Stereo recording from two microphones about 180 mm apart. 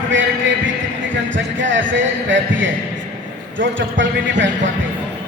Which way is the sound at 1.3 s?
90° right.